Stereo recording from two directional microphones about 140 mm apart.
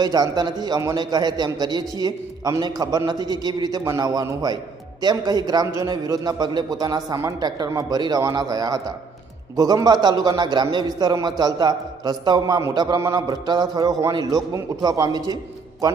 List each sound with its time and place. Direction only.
0.0 s a man's voice: 30° right (ahead or behind)